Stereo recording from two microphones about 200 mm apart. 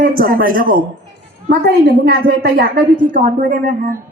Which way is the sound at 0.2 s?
45° right (ahead or behind).